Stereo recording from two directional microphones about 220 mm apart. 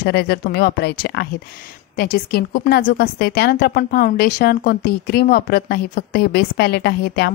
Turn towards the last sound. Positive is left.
turn(degrees=45)  # may be behind; listen again after turning